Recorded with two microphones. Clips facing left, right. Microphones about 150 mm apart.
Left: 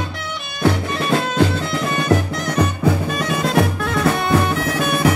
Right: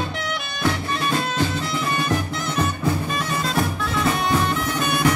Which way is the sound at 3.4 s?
70° left (ahead or behind).